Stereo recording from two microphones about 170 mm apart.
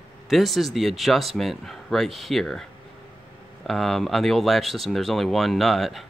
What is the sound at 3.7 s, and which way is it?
Speech, centre (ahead or behind).